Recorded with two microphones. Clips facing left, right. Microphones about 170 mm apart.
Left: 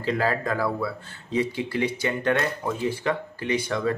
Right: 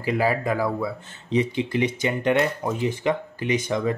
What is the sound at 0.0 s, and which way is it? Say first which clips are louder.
Speech: right 2 dB; 10° right (ahead or behind).